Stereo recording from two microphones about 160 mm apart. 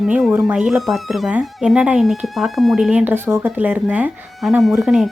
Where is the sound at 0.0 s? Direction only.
5° right (ahead or behind).